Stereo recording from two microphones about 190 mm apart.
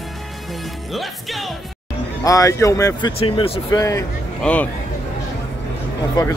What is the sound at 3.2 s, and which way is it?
Speech, 30° left (ahead or behind).